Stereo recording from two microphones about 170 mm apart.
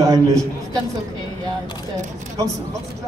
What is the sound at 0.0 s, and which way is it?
Speech, 20° right (ahead or behind).